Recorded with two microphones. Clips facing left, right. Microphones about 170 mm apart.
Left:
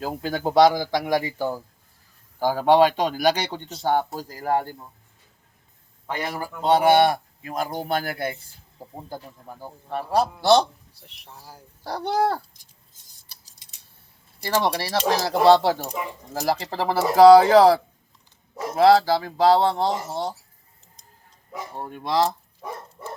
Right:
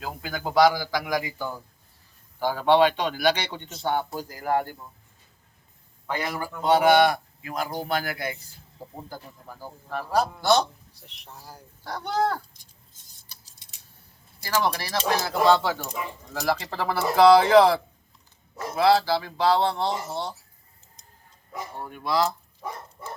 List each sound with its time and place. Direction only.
0.0 s a man's voice: 30° left (ahead or behind)
6.1 s a man's voice: 25° left (ahead or behind)
11.0 s speech: centre (ahead or behind)
11.8 s speech: 30° left (ahead or behind)
14.4 s speech: 30° left (ahead or behind)
18.8 s speech: 45° left (ahead or behind)
21.8 s speech: 30° left (ahead or behind)